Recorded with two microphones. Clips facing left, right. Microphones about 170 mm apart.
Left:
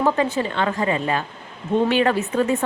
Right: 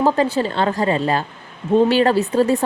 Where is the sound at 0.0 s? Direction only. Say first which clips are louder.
Right 3 dB; 35° right (ahead or behind).